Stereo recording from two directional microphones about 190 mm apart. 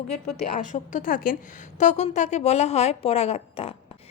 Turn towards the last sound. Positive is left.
turn(degrees=30)  # may be behind; listen again after turning